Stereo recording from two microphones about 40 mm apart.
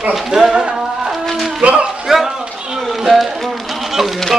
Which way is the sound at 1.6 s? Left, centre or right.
Right.